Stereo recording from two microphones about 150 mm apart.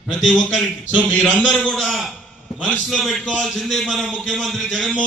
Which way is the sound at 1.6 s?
5° left (ahead or behind).